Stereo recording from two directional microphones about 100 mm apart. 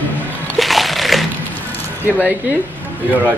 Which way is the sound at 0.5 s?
Centre (ahead or behind).